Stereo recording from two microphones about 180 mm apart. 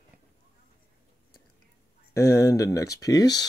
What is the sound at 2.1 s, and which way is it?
Speech, 15° left (ahead or behind).